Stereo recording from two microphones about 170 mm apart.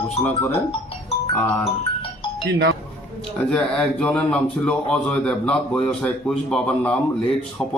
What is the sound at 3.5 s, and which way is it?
Speech, 5° left (ahead or behind).